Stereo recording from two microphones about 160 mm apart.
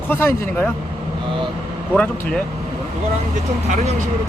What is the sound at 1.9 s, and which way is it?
Speech, 10° left (ahead or behind).